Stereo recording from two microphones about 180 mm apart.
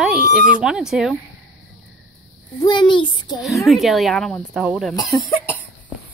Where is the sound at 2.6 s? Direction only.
25° left (ahead or behind).